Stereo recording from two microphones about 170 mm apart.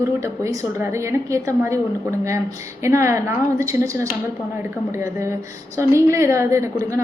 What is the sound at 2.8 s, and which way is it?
A woman's voice, 15° right (ahead or behind).